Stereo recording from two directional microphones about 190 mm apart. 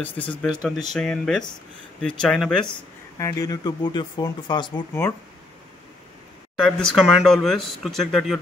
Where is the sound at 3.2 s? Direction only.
20° left (ahead or behind).